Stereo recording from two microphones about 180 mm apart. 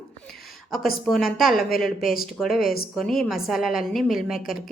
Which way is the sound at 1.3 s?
Centre (ahead or behind).